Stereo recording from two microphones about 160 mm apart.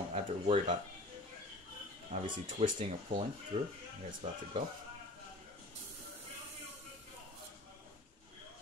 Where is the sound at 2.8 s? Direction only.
30° right (ahead or behind).